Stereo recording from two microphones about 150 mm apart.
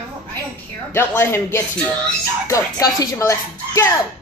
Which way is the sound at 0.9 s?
15° left (ahead or behind).